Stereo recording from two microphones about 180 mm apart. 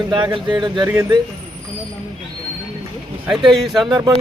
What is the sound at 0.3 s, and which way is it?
Speech, 25° right (ahead or behind).